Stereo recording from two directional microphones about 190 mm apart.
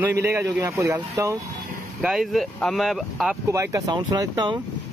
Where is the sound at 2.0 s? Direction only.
Centre (ahead or behind).